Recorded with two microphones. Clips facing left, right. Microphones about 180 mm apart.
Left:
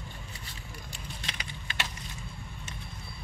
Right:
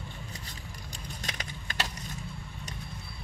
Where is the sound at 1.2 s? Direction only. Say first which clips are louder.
Right 3 dB; 45° right (ahead or behind).